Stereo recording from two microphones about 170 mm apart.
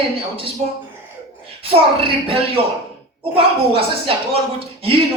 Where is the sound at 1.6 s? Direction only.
35° right (ahead or behind).